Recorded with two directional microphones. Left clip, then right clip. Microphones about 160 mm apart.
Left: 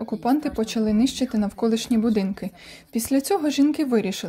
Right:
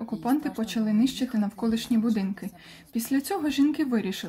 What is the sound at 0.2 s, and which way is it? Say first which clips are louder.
Speech: left 5 dB; 35° left (ahead or behind).